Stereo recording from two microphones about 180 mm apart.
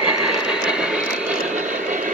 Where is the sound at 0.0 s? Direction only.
5° right (ahead or behind).